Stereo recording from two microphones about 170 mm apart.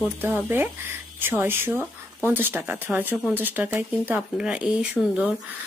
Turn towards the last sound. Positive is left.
turn(degrees=-5)  # may be behind; listen again after turning